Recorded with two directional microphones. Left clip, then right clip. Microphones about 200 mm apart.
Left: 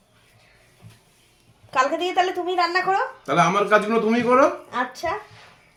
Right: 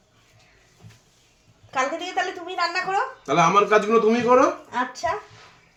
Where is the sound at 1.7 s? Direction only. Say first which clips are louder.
Left 4 dB; 55° left (ahead or behind).